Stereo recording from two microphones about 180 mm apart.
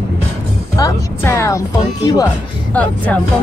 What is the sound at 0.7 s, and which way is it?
Speech, 15° left (ahead or behind).